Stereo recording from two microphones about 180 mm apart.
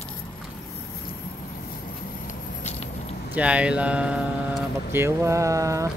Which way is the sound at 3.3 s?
5° right (ahead or behind).